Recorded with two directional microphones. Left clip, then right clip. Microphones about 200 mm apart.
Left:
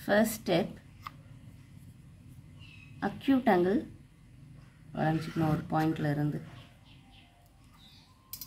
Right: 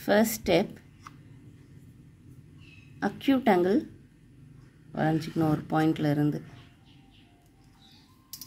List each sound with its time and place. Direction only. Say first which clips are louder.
0.0 s speech: right 3 dB; 30° right (ahead or behind)
3.0 s speech: right 3 dB; 30° right (ahead or behind)
4.9 s speech: right 4 dB; 30° right (ahead or behind)